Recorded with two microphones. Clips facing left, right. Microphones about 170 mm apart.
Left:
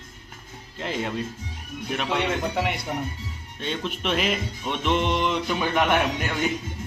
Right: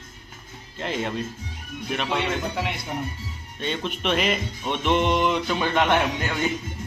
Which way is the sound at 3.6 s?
Centre (ahead or behind).